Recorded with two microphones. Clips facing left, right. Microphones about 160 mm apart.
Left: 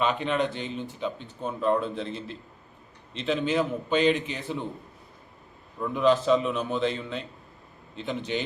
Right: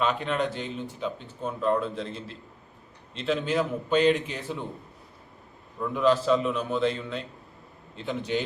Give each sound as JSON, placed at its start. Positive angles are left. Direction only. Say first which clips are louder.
{"t": 0.0, "sound": "speech", "louder": "left 1 dB", "side_deg": 0}
{"t": 5.9, "sound": "speech", "louder": "left 1 dB", "side_deg": 0}